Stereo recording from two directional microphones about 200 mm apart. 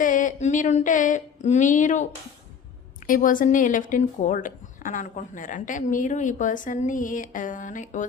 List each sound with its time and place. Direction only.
0.0 s a woman's voice: 40° left (ahead or behind)
3.1 s a woman's voice: 45° left (ahead or behind)